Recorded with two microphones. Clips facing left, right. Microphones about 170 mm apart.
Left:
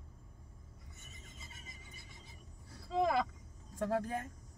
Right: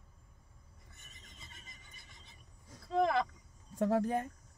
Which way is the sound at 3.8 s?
20° right (ahead or behind).